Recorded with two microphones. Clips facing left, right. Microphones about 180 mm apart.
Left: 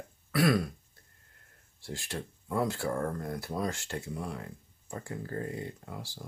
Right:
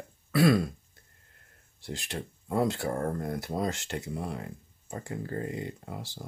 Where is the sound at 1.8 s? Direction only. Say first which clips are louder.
Right 1 dB; 20° right (ahead or behind).